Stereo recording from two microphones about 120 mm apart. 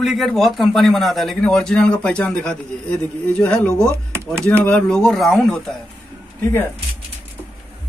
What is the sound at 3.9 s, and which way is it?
Speech, 20° right (ahead or behind).